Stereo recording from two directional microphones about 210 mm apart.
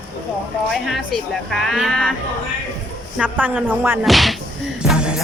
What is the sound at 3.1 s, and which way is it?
Speech, 10° right (ahead or behind).